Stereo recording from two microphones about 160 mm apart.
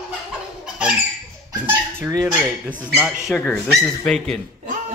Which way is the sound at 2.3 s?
15° right (ahead or behind).